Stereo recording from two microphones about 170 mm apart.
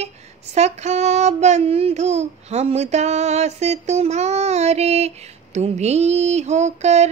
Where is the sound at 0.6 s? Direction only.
40° right (ahead or behind).